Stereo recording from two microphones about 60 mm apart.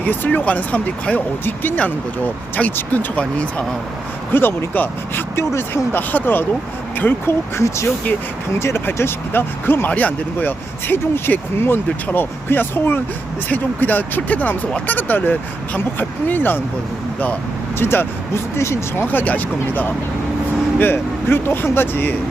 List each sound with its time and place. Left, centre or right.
0.0 s speech: left
4.3 s speech: left
5.5 s speech: left
6.0 s speech: left
7.3 s speech: left
9.9 s speech: left
17.7 s speech: left
19.0 s speech: left